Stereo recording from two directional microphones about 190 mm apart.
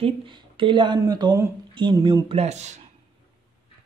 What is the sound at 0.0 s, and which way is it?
Speech, 25° right (ahead or behind).